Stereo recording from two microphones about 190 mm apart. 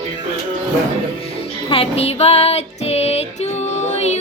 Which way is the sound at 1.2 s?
30° left (ahead or behind).